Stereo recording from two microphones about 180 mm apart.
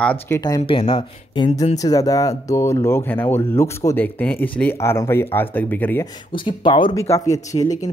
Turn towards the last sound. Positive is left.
turn(degrees=20)  # may be behind; listen again after turning